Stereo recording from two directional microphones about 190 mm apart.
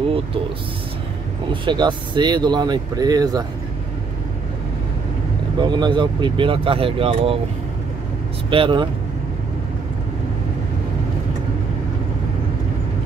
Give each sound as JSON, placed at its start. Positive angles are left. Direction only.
{"t": 1.5, "sound": "speech", "side_deg": -25}
{"t": 5.6, "sound": "speech", "side_deg": -25}
{"t": 8.5, "sound": "speech", "side_deg": -25}